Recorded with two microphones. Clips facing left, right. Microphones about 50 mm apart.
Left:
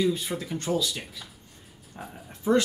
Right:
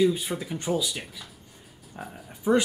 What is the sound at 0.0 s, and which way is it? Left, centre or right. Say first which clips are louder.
Speech: right 3 dB; centre.